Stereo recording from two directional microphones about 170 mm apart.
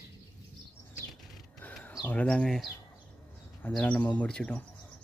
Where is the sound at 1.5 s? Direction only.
10° left (ahead or behind).